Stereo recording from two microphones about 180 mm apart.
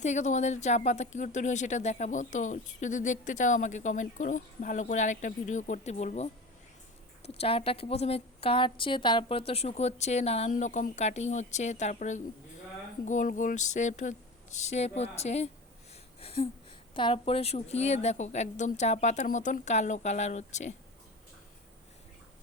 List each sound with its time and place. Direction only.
0.0 s speech: 40° left (ahead or behind)
16.2 s a sound: 35° left (ahead or behind)
16.9 s speech: 30° left (ahead or behind)